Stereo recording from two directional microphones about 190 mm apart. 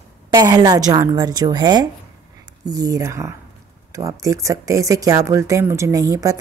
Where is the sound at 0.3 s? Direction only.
20° right (ahead or behind).